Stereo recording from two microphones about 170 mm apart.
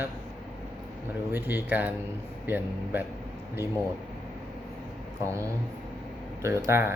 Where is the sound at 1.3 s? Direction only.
10° right (ahead or behind).